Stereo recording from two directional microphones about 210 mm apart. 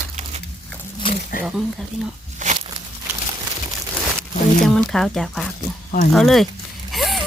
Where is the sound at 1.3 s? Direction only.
40° left (ahead or behind).